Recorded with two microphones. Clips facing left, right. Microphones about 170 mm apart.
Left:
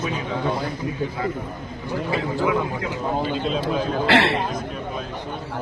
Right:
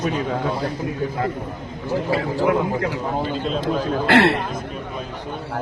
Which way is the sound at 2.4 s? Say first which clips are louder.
Right 4 dB; 60° right (ahead or behind).